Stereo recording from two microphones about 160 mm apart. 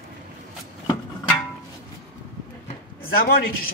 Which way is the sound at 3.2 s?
70° left (ahead or behind).